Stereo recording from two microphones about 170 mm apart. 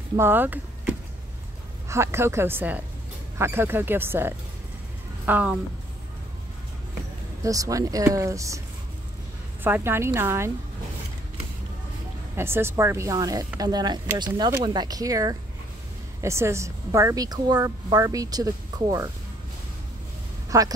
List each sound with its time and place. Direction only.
0.1 s speech: 15° right (ahead or behind)
7.4 s a woman's voice: 20° right (ahead or behind)
9.6 s speech: 10° right (ahead or behind)
12.4 s a woman's voice: 15° right (ahead or behind)
20.4 s a sound: 20° right (ahead or behind)